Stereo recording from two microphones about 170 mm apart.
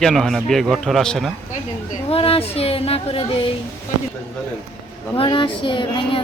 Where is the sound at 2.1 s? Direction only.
35° left (ahead or behind).